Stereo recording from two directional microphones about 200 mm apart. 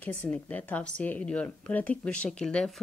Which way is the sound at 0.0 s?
10° left (ahead or behind).